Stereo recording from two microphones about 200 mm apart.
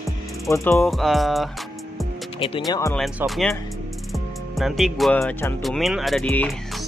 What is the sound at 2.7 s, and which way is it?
Music, 15° left (ahead or behind).